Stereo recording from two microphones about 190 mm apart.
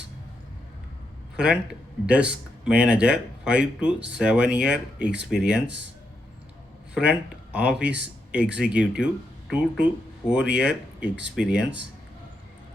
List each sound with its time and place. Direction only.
2.0 s speech: 5° right (ahead or behind)
6.9 s speech: 5° right (ahead or behind)